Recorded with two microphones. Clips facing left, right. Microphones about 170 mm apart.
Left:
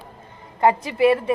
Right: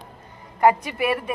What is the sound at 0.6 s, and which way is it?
Speech, 25° left (ahead or behind).